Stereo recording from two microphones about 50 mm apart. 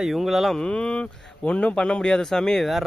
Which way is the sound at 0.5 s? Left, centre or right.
Centre.